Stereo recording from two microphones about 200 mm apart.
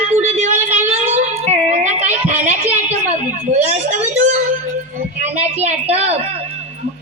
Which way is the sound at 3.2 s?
35° right (ahead or behind).